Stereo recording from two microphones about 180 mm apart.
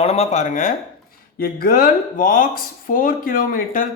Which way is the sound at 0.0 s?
35° left (ahead or behind).